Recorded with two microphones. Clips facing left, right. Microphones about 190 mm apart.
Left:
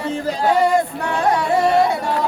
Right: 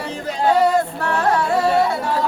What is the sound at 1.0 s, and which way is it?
Music, 15° left (ahead or behind).